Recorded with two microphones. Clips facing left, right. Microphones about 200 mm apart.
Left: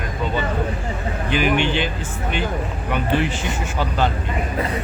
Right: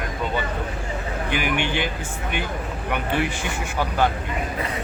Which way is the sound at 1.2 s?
15° right (ahead or behind).